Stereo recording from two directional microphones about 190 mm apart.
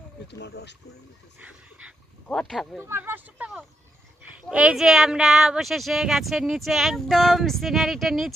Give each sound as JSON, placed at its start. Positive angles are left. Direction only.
{"t": 0.3, "sound": "speech", "side_deg": 65}
{"t": 1.4, "sound": "speech", "side_deg": -5}
{"t": 2.8, "sound": "speech", "side_deg": -10}